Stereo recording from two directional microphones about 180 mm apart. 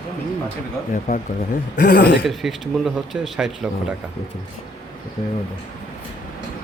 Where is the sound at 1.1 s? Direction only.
55° left (ahead or behind).